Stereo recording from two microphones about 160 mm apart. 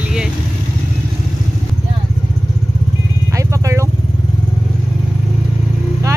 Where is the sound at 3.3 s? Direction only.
20° right (ahead or behind).